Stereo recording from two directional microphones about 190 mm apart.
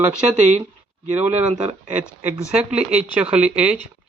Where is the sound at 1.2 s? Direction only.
10° right (ahead or behind).